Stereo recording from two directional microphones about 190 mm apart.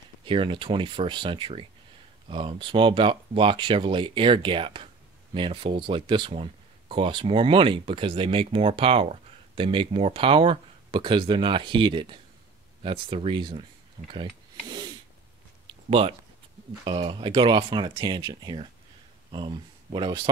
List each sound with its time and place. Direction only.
0.2 s speech: 25° right (ahead or behind)
14.7 s snort: 25° right (ahead or behind)
15.6 s a sound: 30° right (ahead or behind)
16.8 s speech: 25° right (ahead or behind)